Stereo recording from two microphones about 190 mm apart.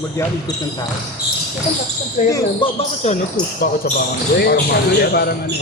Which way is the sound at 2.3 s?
25° left (ahead or behind).